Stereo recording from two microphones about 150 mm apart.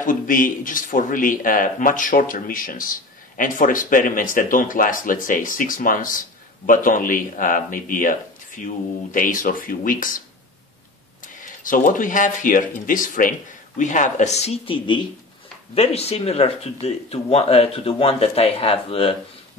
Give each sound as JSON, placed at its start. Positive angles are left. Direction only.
{"t": 0.0, "sound": "speech", "side_deg": 65}
{"t": 11.6, "sound": "speech", "side_deg": 60}